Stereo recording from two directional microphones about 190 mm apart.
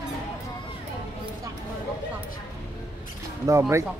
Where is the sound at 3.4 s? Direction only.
15° right (ahead or behind).